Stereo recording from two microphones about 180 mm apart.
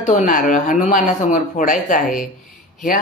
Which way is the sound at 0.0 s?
45° left (ahead or behind).